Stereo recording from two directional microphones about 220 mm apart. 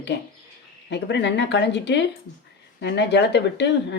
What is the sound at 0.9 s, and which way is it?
Speech, 50° left (ahead or behind).